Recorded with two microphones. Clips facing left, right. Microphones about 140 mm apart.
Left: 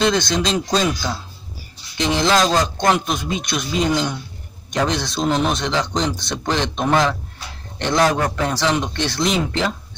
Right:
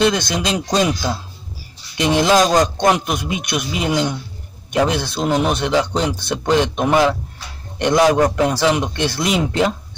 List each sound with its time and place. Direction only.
0.1 s a man's voice: 10° right (ahead or behind)
2.2 s a man's voice: 15° right (ahead or behind)